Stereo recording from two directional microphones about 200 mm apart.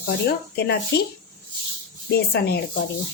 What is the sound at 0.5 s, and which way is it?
Speech, 55° left (ahead or behind).